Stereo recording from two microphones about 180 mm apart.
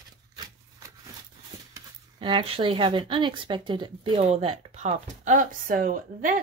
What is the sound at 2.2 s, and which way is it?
Speech, 30° right (ahead or behind).